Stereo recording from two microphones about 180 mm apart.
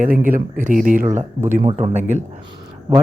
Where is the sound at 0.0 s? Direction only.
50° right (ahead or behind).